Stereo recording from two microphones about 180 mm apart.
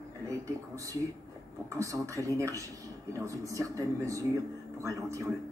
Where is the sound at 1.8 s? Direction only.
15° right (ahead or behind).